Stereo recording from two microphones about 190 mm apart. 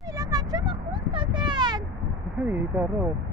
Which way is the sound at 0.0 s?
20° right (ahead or behind).